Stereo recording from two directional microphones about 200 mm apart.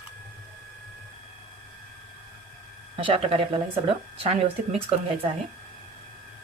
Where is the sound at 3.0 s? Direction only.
25° right (ahead or behind).